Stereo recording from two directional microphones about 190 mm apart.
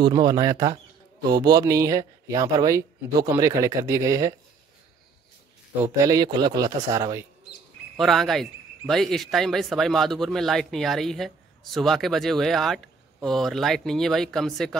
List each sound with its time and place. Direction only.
0.0 s speech: 20° right (ahead or behind)
5.8 s speech: 15° right (ahead or behind)
8.0 s speech: centre (ahead or behind)